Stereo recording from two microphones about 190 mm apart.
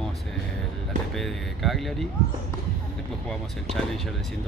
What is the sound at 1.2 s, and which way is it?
Speech, centre (ahead or behind).